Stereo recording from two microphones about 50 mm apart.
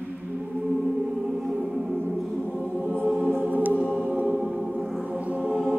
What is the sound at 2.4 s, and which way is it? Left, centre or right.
Choir, centre.